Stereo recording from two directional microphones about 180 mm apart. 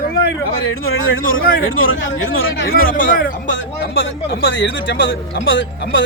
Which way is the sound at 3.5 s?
75° left (ahead or behind).